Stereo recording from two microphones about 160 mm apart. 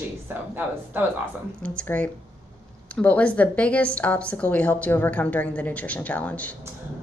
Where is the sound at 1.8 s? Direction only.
10° left (ahead or behind).